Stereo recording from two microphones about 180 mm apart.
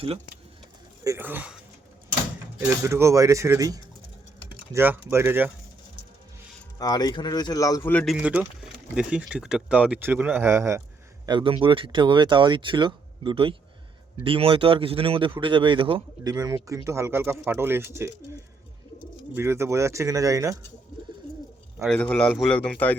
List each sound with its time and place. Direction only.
1.0 s speech: 15° right (ahead or behind)
2.6 s speech: 15° right (ahead or behind)
6.7 s speech: 20° left (ahead or behind)
8.1 s speech: 5° right (ahead or behind)
11.3 s speech: 30° right (ahead or behind)
19.3 s speech: 15° right (ahead or behind)
21.8 s a man's voice: 5° left (ahead or behind)